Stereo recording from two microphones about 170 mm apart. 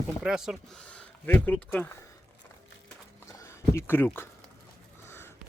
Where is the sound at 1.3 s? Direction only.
10° left (ahead or behind).